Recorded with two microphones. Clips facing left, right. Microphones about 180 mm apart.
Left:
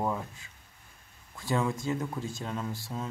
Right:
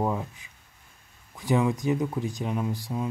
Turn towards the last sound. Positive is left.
turn(degrees=-15)  # may be behind; listen again after turning